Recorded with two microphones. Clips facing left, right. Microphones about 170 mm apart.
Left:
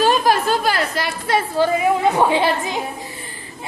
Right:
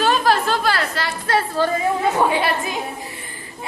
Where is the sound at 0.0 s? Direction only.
15° left (ahead or behind).